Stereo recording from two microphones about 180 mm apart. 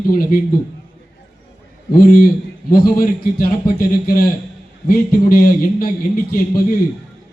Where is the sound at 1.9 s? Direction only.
50° left (ahead or behind).